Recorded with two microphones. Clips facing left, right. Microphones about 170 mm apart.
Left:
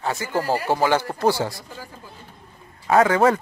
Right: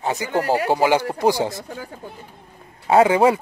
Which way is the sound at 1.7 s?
60° right (ahead or behind).